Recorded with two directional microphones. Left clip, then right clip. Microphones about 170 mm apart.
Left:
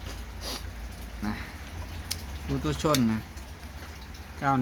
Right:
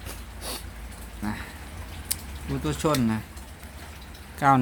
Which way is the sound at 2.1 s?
15° right (ahead or behind).